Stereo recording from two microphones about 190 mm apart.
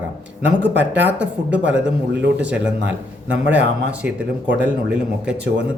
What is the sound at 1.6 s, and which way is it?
Speech, 70° right (ahead or behind).